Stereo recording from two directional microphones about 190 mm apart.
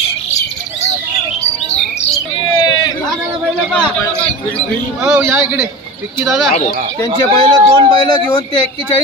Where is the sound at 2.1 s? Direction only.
20° left (ahead or behind).